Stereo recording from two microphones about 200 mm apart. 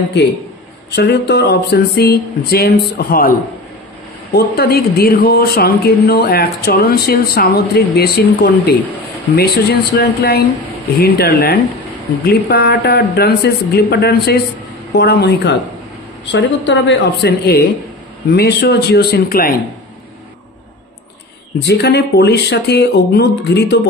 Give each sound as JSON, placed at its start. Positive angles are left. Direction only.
{"t": 0.9, "sound": "speech", "side_deg": 55}
{"t": 21.5, "sound": "speech", "side_deg": 55}